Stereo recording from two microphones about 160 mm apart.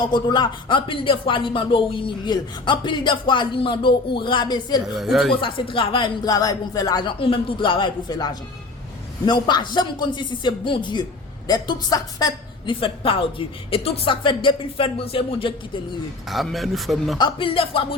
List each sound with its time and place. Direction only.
0.0 s speech: 25° left (ahead or behind)
4.9 s speech: centre (ahead or behind)
5.4 s speech: 30° left (ahead or behind)
12.8 s speech: 35° left (ahead or behind)
16.3 s speech: centre (ahead or behind)
17.2 s speech: 30° left (ahead or behind)